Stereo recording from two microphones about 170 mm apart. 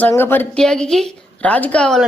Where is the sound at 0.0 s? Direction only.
10° left (ahead or behind).